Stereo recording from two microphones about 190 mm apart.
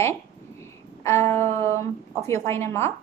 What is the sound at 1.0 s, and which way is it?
Music, 15° left (ahead or behind).